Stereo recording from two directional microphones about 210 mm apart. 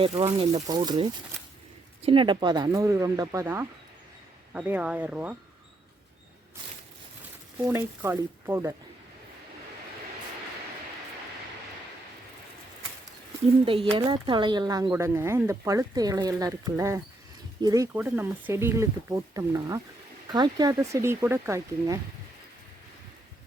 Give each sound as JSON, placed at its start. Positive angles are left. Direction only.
{"t": 0.0, "sound": "speech", "side_deg": -25}
{"t": 7.6, "sound": "speech", "side_deg": -15}
{"t": 13.7, "sound": "speech", "side_deg": -25}